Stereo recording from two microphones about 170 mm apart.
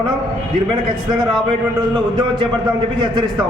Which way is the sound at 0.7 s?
25° right (ahead or behind).